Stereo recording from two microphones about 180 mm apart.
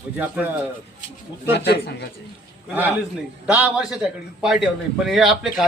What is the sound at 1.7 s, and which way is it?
Speech, 65° left (ahead or behind).